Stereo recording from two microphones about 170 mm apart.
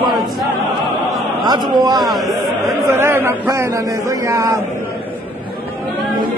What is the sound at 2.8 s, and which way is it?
Chatter, 15° right (ahead or behind).